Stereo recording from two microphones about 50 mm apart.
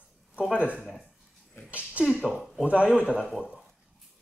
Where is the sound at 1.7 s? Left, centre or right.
Right.